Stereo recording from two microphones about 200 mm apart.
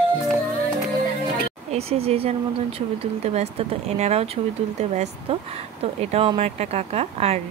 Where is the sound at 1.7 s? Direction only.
30° right (ahead or behind).